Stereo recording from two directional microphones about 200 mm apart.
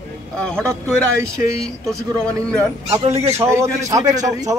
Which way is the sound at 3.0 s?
30° right (ahead or behind).